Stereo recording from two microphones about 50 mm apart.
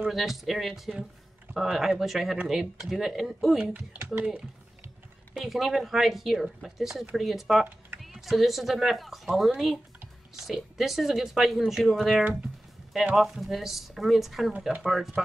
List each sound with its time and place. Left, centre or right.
0.0 s speech: centre
3.7 s speech: right
5.3 s speech: centre